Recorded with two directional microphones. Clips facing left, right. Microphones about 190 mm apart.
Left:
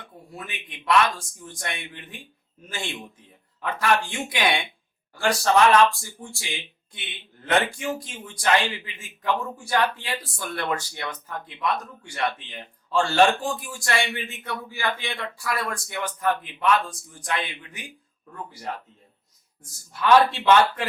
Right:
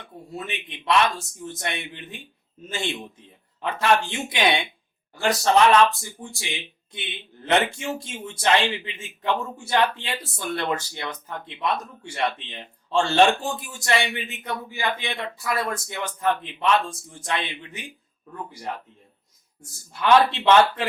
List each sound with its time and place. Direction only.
0.0 s a man's voice: 25° right (ahead or behind)
19.9 s a man's voice: 25° right (ahead or behind)